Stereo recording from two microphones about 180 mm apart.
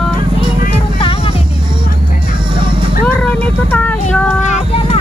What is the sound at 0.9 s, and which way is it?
Music, 30° left (ahead or behind).